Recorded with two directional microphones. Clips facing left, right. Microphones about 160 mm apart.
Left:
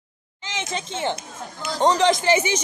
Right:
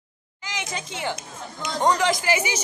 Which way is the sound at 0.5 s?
25° left (ahead or behind).